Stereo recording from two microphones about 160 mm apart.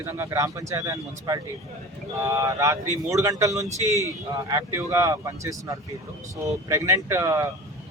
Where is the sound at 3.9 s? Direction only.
20° left (ahead or behind).